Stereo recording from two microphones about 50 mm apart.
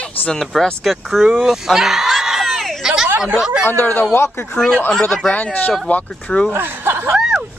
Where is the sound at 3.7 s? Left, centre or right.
Left.